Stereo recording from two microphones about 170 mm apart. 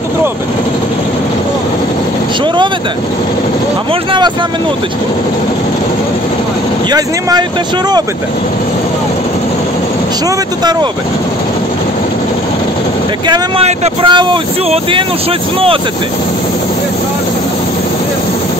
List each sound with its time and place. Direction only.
6.9 s speech: 25° right (ahead or behind)
13.3 s speech: 30° right (ahead or behind)